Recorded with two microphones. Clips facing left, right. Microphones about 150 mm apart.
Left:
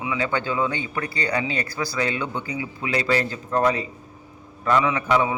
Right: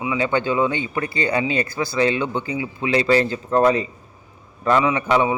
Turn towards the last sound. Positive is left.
turn(degrees=-20)  # may be behind; listen again after turning